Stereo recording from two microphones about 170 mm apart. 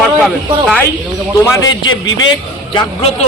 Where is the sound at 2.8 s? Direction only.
35° left (ahead or behind).